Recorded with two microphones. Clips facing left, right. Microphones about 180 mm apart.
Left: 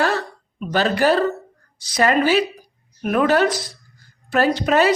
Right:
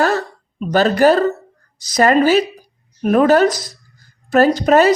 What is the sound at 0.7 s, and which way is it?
A woman's voice, 45° right (ahead or behind).